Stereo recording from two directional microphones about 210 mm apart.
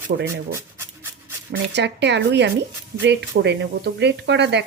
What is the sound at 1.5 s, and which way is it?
Speech, 55° right (ahead or behind).